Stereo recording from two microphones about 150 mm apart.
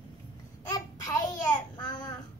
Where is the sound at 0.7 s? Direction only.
20° left (ahead or behind).